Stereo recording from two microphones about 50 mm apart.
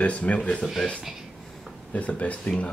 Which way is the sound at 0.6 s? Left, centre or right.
Centre.